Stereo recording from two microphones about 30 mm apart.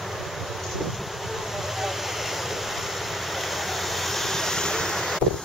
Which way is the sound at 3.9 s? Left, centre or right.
Centre.